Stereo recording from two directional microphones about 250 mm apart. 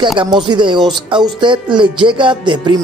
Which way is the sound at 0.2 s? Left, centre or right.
Centre.